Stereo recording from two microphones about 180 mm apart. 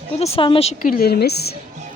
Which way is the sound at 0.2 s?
35° left (ahead or behind).